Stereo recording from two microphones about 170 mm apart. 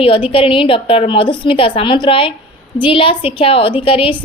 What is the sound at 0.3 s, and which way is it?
A woman's voice, 30° left (ahead or behind).